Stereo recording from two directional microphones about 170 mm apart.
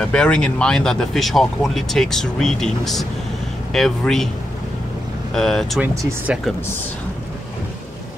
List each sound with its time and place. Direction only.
0.0 s speech: 5° left (ahead or behind)
5.3 s speech: 5° left (ahead or behind)
5.8 s speech: 10° right (ahead or behind)